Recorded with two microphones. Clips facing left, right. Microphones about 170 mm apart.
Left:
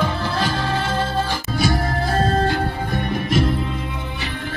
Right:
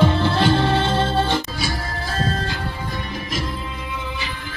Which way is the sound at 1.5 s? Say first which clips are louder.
Left 6 dB; 55° left (ahead or behind).